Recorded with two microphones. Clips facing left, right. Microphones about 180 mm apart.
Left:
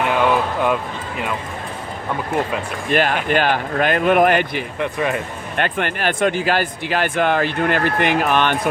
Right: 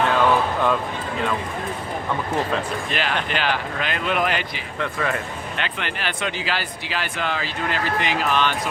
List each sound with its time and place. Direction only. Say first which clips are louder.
0.0 s a sound: left 1 dB; 15° left (ahead or behind)
2.9 s speech: left 10 dB; 50° left (ahead or behind)
4.8 s speech: left 3 dB; 20° left (ahead or behind)
5.5 s speech: left 10 dB; 50° left (ahead or behind)